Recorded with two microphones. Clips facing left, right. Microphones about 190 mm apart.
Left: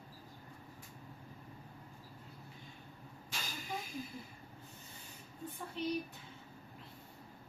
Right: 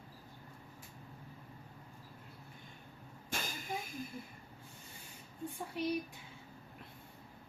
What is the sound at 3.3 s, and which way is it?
Vehicle, 50° right (ahead or behind).